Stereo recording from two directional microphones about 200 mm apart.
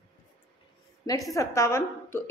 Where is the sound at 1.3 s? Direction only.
15° left (ahead or behind).